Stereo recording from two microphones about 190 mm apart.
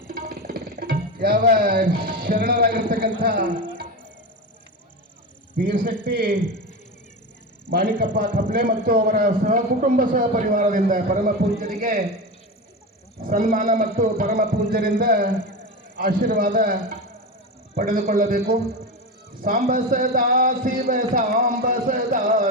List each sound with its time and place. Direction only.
0.1 s music: 55° right (ahead or behind)
5.6 s a man's voice: 50° right (ahead or behind)
7.7 s a man's voice: 55° right (ahead or behind)
13.2 s a man's voice: 45° right (ahead or behind)
17.7 s a man's voice: 45° right (ahead or behind)